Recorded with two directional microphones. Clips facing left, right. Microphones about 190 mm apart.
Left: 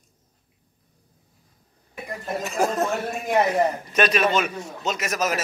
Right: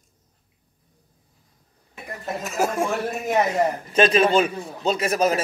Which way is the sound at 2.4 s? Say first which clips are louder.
Even; 5° right (ahead or behind).